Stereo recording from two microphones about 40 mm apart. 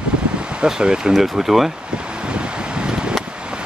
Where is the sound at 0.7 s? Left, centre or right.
Centre.